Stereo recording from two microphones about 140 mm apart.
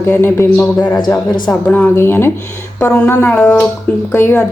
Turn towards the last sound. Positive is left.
turn(degrees=15)  # may be behind; listen again after turning